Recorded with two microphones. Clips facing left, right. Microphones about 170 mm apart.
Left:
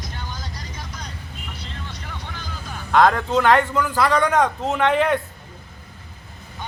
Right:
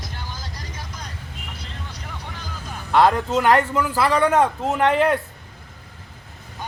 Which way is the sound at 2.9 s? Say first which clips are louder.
Even; 5° right (ahead or behind).